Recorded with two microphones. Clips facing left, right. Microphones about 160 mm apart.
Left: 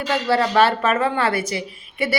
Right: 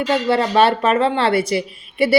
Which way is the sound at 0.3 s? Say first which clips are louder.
Right 1 dB; 25° right (ahead or behind).